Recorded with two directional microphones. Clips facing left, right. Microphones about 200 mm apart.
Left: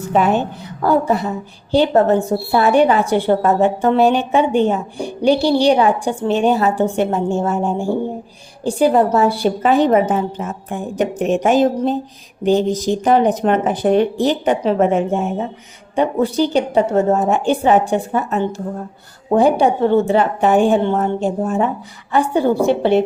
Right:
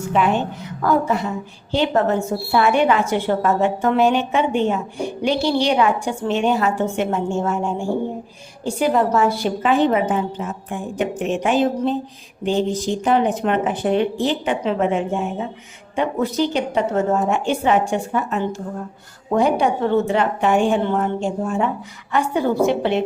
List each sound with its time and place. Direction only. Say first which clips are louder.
0.1 s a woman's voice: left 3 dB; 40° left (ahead or behind)
16.0 s a woman's voice: left 4 dB; 30° left (ahead or behind)